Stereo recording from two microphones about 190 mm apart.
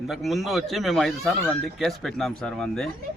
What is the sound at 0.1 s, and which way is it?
A man's voice, centre (ahead or behind).